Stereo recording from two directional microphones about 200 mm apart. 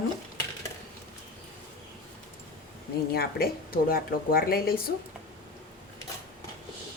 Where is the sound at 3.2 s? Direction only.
50° left (ahead or behind).